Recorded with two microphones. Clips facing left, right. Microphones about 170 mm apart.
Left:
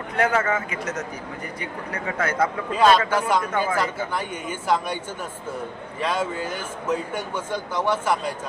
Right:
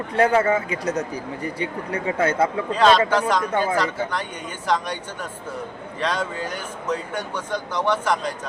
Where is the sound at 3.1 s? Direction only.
5° left (ahead or behind).